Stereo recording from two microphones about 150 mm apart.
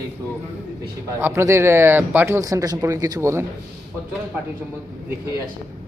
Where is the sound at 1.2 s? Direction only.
20° right (ahead or behind).